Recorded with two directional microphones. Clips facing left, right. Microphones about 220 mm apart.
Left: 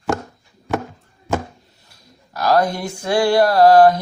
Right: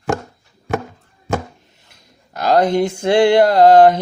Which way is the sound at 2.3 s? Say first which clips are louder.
Right 3 dB; 25° right (ahead or behind).